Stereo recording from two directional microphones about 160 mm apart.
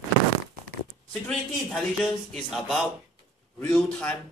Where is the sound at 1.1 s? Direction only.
Centre (ahead or behind).